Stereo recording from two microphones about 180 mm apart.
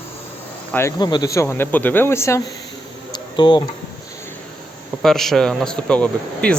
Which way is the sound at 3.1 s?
25° left (ahead or behind).